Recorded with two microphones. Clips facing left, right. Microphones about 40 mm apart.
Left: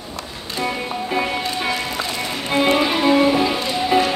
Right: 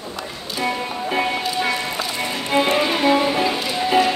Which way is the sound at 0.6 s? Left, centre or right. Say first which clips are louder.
Even; centre.